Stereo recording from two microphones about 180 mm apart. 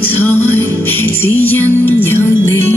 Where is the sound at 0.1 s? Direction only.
10° left (ahead or behind).